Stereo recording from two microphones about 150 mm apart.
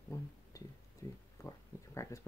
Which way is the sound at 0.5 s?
20° left (ahead or behind).